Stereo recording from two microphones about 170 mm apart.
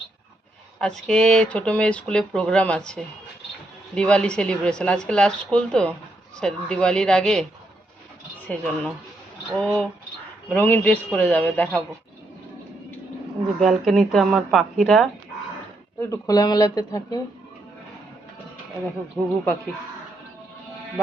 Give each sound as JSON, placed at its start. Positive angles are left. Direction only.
{"t": 0.8, "sound": "speech", "side_deg": 5}
{"t": 8.4, "sound": "a man's voice", "side_deg": 10}
{"t": 13.6, "sound": "speech", "side_deg": 0}
{"t": 16.0, "sound": "speech", "side_deg": 20}
{"t": 19.2, "sound": "speech", "side_deg": 0}